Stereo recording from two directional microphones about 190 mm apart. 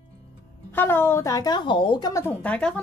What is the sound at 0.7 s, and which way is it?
A woman's voice, 10° left (ahead or behind).